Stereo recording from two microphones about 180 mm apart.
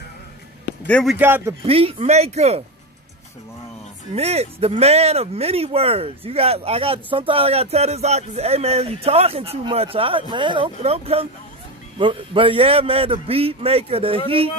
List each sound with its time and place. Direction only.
0.8 s a man's voice: 5° left (ahead or behind)
1.2 s speech: 15° right (ahead or behind)
1.6 s speech: 35° right (ahead or behind)
4.1 s speech: 35° right (ahead or behind)